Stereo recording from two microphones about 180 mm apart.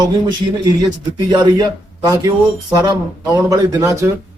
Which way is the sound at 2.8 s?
20° right (ahead or behind).